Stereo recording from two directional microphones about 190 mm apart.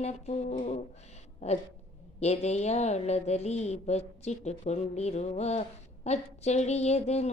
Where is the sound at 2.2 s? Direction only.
35° left (ahead or behind).